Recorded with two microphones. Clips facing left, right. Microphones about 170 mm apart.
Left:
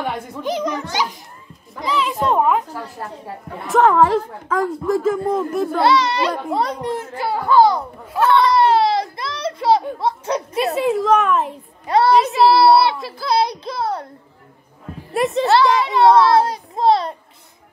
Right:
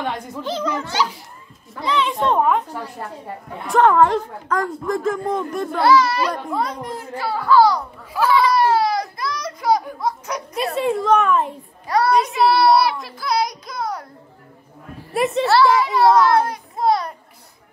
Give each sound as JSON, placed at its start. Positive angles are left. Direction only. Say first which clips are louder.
{"t": 0.4, "sound": "a child's voice", "louder": "left 2 dB", "side_deg": 15}
{"t": 1.9, "sound": "a woman's voice", "louder": "even", "side_deg": 5}
{"t": 5.8, "sound": "a child's voice", "louder": "right 2 dB", "side_deg": 20}
{"t": 8.1, "sound": "a woman's voice", "louder": "left 2 dB", "side_deg": 0}
{"t": 8.5, "sound": "a sound", "louder": "left 2 dB", "side_deg": 25}
{"t": 10.7, "sound": "a woman's voice", "louder": "left 1 dB", "side_deg": 0}
{"t": 11.9, "sound": "a child's voice", "louder": "left 3 dB", "side_deg": 30}
{"t": 15.1, "sound": "a woman's voice", "louder": "left 1 dB", "side_deg": 0}
{"t": 15.4, "sound": "a child's voice", "louder": "even", "side_deg": 20}